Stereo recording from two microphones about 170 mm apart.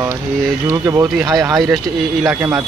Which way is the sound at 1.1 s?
Centre (ahead or behind).